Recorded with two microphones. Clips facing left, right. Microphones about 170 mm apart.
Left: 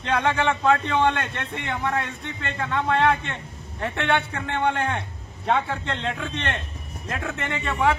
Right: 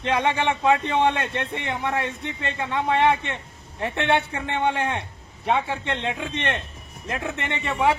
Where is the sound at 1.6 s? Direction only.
25° right (ahead or behind).